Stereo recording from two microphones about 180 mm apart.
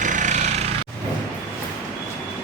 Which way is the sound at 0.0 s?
45° right (ahead or behind).